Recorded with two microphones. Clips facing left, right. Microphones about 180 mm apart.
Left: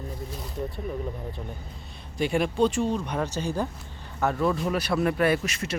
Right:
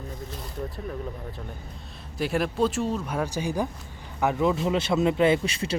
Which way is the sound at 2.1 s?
Centre (ahead or behind).